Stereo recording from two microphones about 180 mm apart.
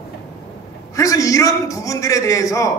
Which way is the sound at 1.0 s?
20° left (ahead or behind).